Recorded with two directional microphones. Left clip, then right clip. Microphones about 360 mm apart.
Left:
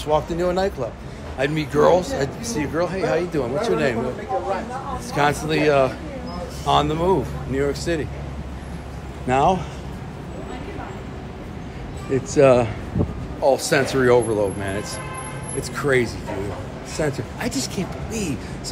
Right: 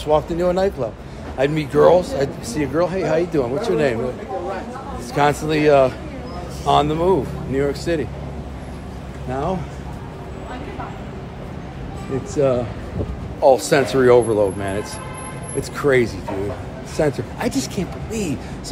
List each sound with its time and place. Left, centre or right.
0.0 s speech: centre
5.1 s speech: centre
12.4 s speech: centre
13.4 s speech: centre